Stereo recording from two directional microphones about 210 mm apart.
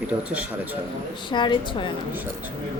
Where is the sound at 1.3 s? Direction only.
20° left (ahead or behind).